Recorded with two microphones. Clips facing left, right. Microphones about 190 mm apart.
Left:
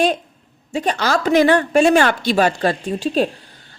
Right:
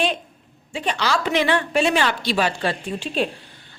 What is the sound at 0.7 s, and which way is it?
A woman's voice, 40° left (ahead or behind).